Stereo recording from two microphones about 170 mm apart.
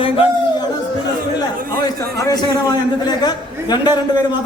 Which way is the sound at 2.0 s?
20° left (ahead or behind).